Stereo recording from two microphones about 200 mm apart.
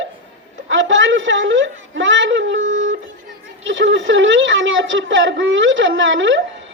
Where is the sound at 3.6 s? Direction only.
65° right (ahead or behind).